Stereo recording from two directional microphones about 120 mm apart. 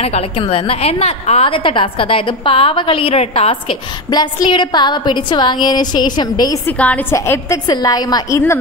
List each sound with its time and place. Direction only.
0.0 s a woman's voice: 55° left (ahead or behind)
4.1 s a woman's voice: 35° left (ahead or behind)
6.6 s a woman's voice: 15° left (ahead or behind); by 8.4 s 35° left (ahead or behind)